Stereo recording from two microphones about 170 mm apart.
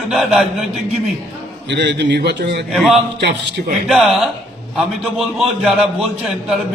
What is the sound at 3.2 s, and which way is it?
Speech, 90° right.